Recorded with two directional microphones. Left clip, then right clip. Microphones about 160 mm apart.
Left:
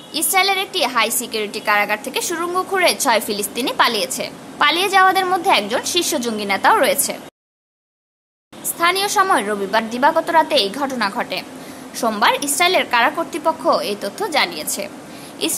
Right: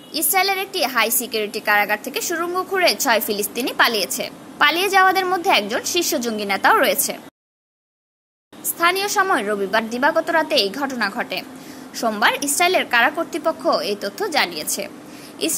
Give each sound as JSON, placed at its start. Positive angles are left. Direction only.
{"t": 0.1, "sound": "a woman's voice", "side_deg": -10}
{"t": 8.7, "sound": "a woman's voice", "side_deg": -10}